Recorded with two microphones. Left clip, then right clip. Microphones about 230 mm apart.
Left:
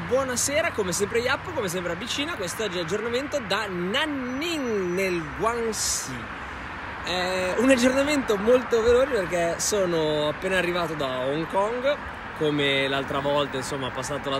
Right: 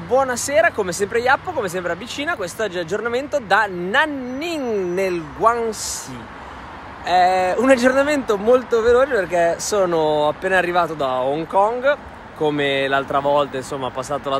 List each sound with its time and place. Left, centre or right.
0.1 s speech: centre
7.1 s speech: centre
9.3 s speech: right
9.7 s speech: centre
12.4 s speech: right
12.9 s speech: centre